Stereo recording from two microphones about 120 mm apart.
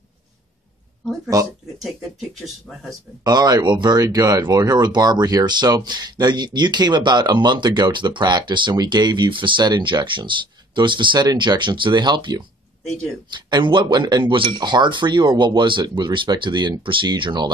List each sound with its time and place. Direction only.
1.3 s speech: 30° right (ahead or behind)
2.9 s speech: 35° right (ahead or behind)